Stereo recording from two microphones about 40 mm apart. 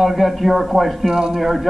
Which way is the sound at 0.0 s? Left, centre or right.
Centre.